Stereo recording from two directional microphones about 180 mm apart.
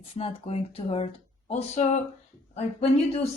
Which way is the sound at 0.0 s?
30° left (ahead or behind).